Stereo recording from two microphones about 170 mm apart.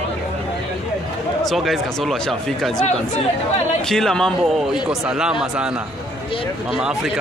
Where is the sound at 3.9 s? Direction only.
5° left (ahead or behind).